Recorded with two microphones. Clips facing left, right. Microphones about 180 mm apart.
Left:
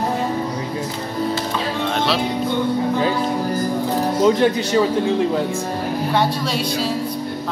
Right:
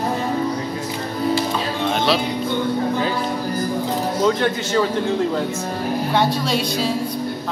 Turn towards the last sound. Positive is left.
turn(degrees=5)  # may be behind; listen again after turning